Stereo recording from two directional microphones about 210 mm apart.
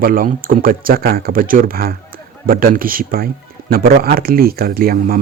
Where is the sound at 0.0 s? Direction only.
45° right (ahead or behind).